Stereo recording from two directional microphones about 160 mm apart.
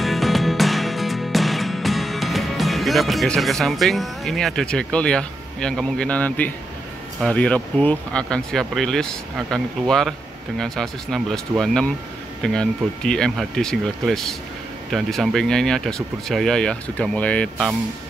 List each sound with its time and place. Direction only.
0.0 s music: centre (ahead or behind)
7.2 s speech: 5° left (ahead or behind)